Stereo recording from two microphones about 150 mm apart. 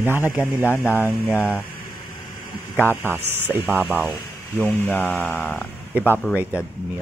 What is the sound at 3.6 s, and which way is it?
Speech, 5° right (ahead or behind).